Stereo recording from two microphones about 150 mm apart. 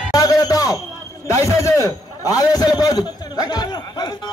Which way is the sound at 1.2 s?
20° left (ahead or behind).